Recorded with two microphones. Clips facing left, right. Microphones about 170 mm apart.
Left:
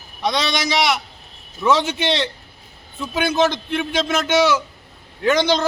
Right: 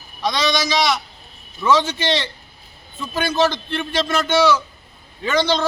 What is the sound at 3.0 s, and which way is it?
A man's voice, 15° left (ahead or behind).